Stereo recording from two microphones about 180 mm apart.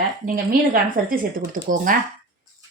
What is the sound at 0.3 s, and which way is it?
Speech, 55° right (ahead or behind).